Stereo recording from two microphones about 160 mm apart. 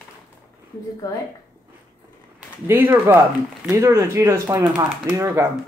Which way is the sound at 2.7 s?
15° right (ahead or behind).